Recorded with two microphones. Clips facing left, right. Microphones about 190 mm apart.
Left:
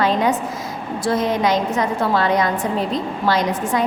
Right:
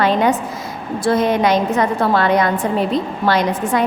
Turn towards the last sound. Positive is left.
turn(degrees=-60)  # may be behind; listen again after turning